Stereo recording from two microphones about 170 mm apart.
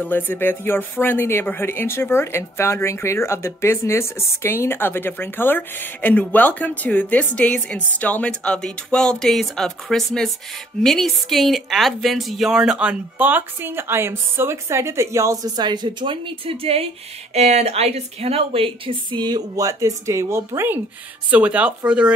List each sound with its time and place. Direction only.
0.0 s a woman's voice: 10° left (ahead or behind); by 22.1 s 5° right (ahead or behind)